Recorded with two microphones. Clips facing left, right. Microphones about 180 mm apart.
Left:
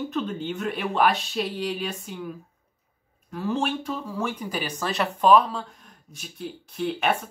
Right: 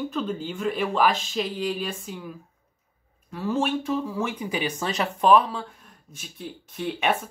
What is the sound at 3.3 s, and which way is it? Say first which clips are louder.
Speech: right 1 dB; centre (ahead or behind).